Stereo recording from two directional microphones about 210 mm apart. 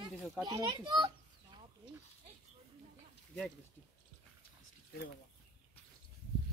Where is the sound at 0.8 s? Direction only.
20° right (ahead or behind).